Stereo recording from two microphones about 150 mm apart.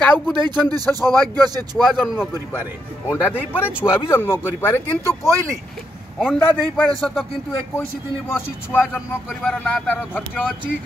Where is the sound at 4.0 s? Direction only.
20° left (ahead or behind).